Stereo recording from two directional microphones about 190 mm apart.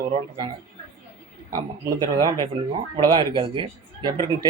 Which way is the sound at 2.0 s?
20° right (ahead or behind).